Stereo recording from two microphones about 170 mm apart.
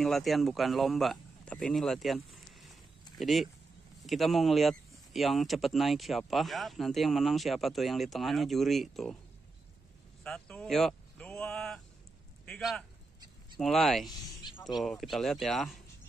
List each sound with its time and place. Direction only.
0.0 s speech: centre (ahead or behind)
10.2 s a sound: 5° left (ahead or behind)
12.4 s a man's voice: 5° left (ahead or behind)
14.5 s music: 25° left (ahead or behind)
14.8 s speech: centre (ahead or behind)